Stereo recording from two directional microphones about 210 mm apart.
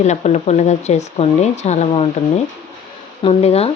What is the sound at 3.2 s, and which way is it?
Speech, 30° left (ahead or behind).